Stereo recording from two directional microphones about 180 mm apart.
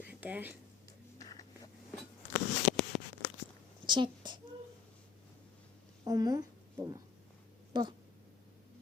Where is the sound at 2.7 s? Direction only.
Centre (ahead or behind).